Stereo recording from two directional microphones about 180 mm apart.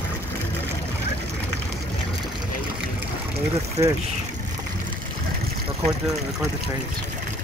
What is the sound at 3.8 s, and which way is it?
Speech, 30° right (ahead or behind).